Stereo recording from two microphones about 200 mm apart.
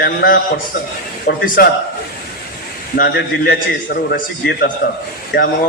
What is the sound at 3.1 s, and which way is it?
A man's voice, 55° left (ahead or behind).